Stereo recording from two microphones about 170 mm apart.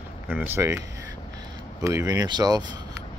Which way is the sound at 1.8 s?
15° right (ahead or behind).